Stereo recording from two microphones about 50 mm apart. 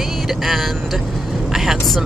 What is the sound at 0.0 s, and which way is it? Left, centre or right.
Speech, centre.